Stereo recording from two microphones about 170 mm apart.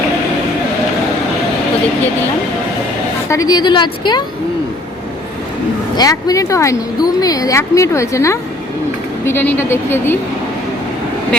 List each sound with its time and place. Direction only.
3.2 s a woman's voice: 20° left (ahead or behind)
6.0 s a woman's voice: 20° left (ahead or behind)